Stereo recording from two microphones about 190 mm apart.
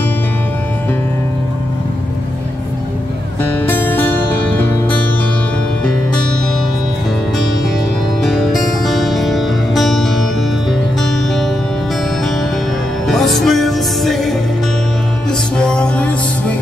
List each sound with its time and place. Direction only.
3.5 s music: 10° left (ahead or behind)
8.2 s music: centre (ahead or behind)
13.0 s music: centre (ahead or behind)
15.5 s music: 5° left (ahead or behind)